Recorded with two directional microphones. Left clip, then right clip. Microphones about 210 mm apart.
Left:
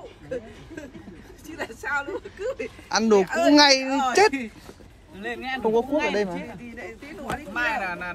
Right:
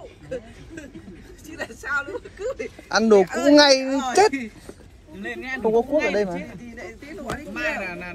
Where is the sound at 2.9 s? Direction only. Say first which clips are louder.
Right 3 dB; 15° left (ahead or behind).